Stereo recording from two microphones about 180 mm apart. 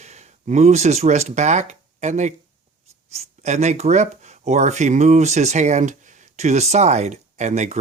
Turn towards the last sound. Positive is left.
turn(degrees=-40)  # may be behind; listen again after turning